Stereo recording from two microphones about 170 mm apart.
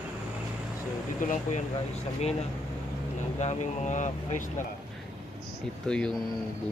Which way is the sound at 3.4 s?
45° left (ahead or behind).